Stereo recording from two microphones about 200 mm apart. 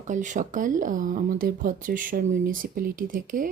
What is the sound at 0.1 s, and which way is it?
Speech, 40° right (ahead or behind).